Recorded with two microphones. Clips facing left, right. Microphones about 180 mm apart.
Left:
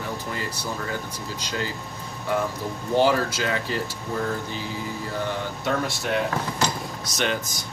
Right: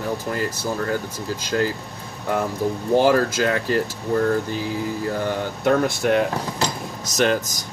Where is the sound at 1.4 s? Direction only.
50° right (ahead or behind).